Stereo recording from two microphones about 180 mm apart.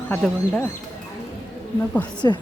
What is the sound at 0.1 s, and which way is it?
Speech, 10° left (ahead or behind).